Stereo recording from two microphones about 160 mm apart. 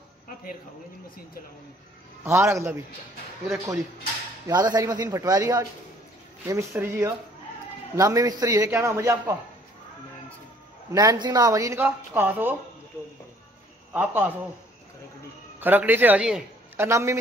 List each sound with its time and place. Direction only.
2.2 s speech: 15° right (ahead or behind)
4.5 s speech: 25° right (ahead or behind)
10.9 s speech: 20° right (ahead or behind)
13.9 s speech: 10° right (ahead or behind)
15.6 s a man's voice: 10° right (ahead or behind)